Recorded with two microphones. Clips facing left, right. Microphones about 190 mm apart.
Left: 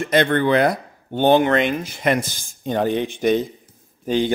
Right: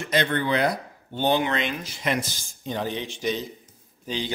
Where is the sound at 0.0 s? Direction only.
55° left (ahead or behind).